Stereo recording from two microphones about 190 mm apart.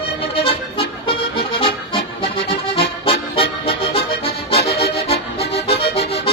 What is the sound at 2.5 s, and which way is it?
Music, 30° left (ahead or behind).